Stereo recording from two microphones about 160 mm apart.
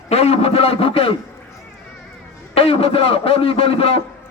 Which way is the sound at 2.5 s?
35° left (ahead or behind).